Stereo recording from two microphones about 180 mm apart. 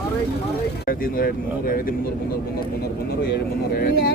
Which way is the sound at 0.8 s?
55° left (ahead or behind).